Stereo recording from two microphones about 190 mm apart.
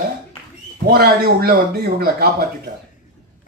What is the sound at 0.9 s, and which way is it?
Speech, 55° right (ahead or behind).